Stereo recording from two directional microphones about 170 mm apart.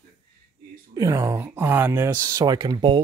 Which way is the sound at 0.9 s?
20° right (ahead or behind).